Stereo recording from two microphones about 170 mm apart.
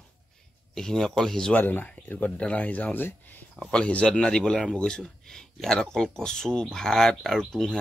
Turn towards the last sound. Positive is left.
turn(degrees=5)  # may be behind; listen again after turning